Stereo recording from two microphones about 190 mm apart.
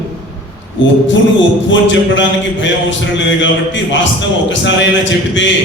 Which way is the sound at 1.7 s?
75° left (ahead or behind).